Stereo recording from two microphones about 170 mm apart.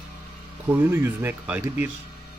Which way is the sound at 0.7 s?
10° right (ahead or behind).